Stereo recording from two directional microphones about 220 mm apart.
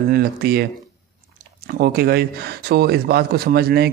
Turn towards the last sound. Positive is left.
turn(degrees=-45)  # may be behind; listen again after turning